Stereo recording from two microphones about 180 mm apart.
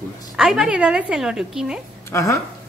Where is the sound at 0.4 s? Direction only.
5° right (ahead or behind).